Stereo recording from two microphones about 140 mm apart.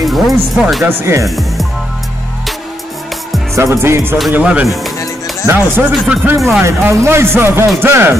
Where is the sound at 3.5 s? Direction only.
20° right (ahead or behind).